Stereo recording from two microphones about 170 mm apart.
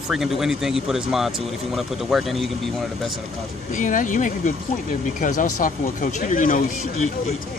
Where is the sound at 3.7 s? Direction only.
50° left (ahead or behind).